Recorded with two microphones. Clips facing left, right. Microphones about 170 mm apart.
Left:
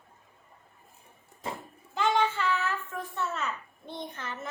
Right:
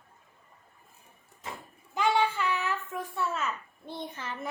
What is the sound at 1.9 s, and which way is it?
Child singing, 10° right (ahead or behind).